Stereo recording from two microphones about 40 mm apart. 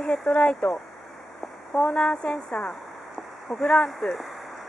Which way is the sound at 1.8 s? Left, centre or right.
Centre.